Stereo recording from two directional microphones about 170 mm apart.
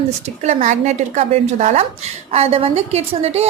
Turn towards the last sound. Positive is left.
turn(degrees=-40)  # may be behind; listen again after turning